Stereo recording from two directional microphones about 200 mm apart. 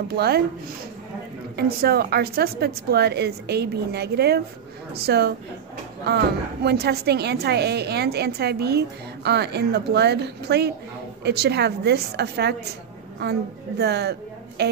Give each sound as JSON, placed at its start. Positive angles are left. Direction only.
{"t": 0.1, "sound": "a woman's voice", "side_deg": -50}
{"t": 1.6, "sound": "a woman's voice", "side_deg": -50}